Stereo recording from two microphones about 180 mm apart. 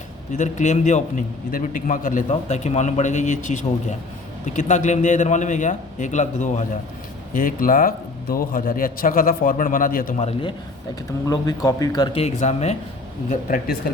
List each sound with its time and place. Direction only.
0.3 s a man's voice: 40° left (ahead or behind)
10.2 s speech: 35° left (ahead or behind)
11.3 s speech: 20° left (ahead or behind)
12.2 s speech: 40° left (ahead or behind)
13.3 s a man's voice: 50° left (ahead or behind)